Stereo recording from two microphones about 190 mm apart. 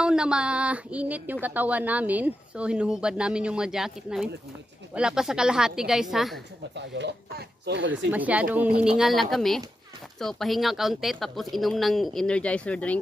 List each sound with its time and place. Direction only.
0.0 s speech: 5° right (ahead or behind)
6.7 s speech: 65° right (ahead or behind)
8.1 s speech: 10° right (ahead or behind)